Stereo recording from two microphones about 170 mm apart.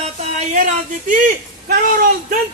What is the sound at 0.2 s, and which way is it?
Speech, 45° right (ahead or behind).